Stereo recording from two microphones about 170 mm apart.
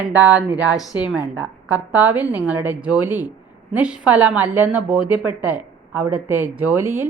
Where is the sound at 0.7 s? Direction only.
20° left (ahead or behind).